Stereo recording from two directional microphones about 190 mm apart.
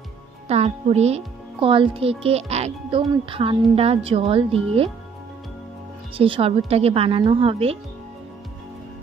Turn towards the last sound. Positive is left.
turn(degrees=-30)  # may be behind; listen again after turning